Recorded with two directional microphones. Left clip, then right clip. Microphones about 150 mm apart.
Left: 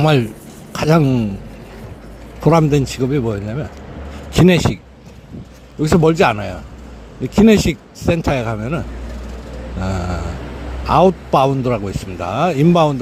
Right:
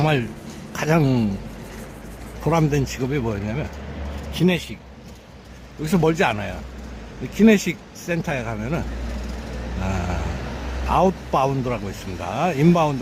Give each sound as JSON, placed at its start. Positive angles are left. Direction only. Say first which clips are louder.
{"t": 0.0, "sound": "a man's voice", "louder": "left 6 dB", "side_deg": 35}
{"t": 1.0, "sound": "a man's voice", "louder": "left 3 dB", "side_deg": 5}
{"t": 2.4, "sound": "speech", "louder": "left 7 dB", "side_deg": 30}
{"t": 4.4, "sound": "speech", "louder": "left 9 dB", "side_deg": 45}
{"t": 5.8, "sound": "a man's voice", "louder": "left 7 dB", "side_deg": 30}
{"t": 9.8, "sound": "a man's voice", "louder": "left 4 dB", "side_deg": 30}